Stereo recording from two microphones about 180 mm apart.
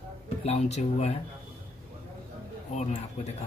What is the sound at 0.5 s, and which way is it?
Speech, 40° left (ahead or behind).